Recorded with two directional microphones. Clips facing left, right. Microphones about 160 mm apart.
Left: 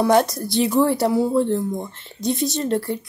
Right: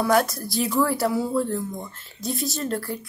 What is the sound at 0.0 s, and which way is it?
Speech, 20° left (ahead or behind).